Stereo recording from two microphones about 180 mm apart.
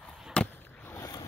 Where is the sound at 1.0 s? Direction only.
20° left (ahead or behind).